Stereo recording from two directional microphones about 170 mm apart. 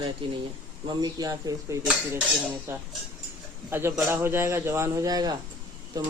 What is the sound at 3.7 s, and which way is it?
A man's voice, 15° right (ahead or behind).